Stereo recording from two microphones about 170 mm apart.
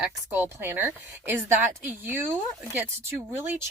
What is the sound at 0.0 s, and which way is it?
Speech, 10° right (ahead or behind).